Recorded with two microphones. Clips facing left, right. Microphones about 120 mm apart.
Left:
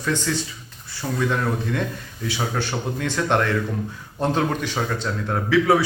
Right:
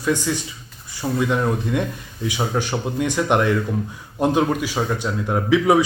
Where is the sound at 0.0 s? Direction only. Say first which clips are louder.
Right 3 dB; 10° right (ahead or behind).